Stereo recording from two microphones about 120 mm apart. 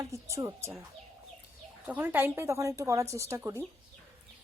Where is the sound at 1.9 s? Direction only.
15° right (ahead or behind).